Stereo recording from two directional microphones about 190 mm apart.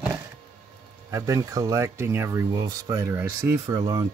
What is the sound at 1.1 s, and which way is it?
Speech, 15° right (ahead or behind).